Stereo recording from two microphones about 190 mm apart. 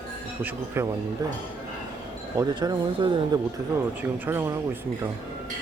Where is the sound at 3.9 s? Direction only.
10° right (ahead or behind).